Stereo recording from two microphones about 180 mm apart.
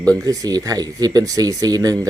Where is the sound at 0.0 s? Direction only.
20° right (ahead or behind).